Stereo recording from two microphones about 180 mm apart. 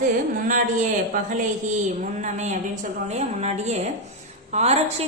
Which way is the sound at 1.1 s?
50° right (ahead or behind).